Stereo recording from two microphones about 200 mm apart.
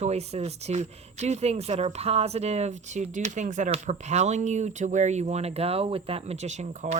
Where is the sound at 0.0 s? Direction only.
30° right (ahead or behind).